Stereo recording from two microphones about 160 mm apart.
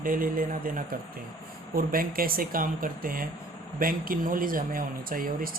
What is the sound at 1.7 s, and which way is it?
Speech, 65° right (ahead or behind).